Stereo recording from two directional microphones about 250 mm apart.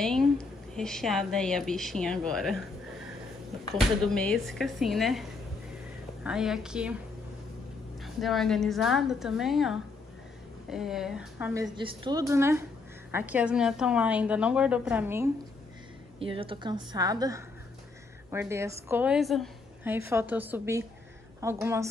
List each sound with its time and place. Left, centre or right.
0.0 s a woman's voice: centre
4.0 s a woman's voice: centre
6.2 s a woman's voice: centre
8.0 s a woman's voice: centre
11.7 s a woman's voice: centre
16.2 s a woman's voice: right